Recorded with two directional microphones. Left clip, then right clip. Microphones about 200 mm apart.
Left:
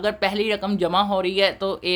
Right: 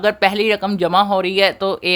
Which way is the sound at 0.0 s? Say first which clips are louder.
Right 7 dB; 30° right (ahead or behind).